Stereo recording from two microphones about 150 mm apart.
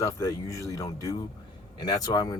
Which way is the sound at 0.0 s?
20° left (ahead or behind).